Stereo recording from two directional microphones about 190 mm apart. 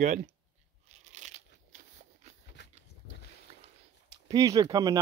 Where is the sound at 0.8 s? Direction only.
40° right (ahead or behind).